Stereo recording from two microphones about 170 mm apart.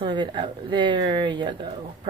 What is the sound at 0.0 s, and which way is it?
Speech, 30° right (ahead or behind).